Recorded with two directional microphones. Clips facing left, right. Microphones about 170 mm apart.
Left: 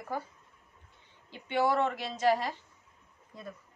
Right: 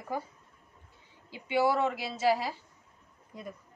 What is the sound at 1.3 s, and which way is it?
Speech, 10° right (ahead or behind).